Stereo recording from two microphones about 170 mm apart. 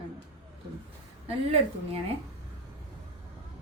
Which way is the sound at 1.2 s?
35° right (ahead or behind).